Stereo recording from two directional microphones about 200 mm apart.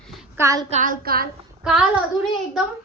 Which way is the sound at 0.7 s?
40° right (ahead or behind).